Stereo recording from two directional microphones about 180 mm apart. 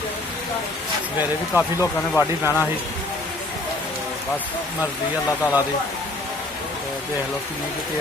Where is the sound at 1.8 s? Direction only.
15° left (ahead or behind).